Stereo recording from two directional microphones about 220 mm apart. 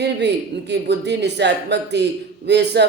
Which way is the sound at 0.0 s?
50° right (ahead or behind).